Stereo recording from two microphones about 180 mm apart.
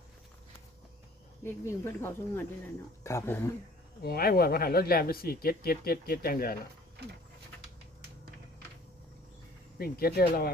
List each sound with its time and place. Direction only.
1.5 s speech: 15° left (ahead or behind)
4.0 s speech: 60° left (ahead or behind)
9.7 s speech: 60° left (ahead or behind)